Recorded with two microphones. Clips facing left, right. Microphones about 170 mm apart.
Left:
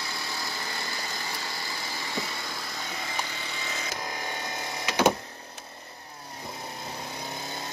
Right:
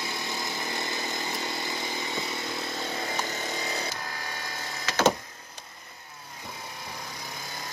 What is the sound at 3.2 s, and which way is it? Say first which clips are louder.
Chainsaw: right 5 dB; 40° right (ahead or behind).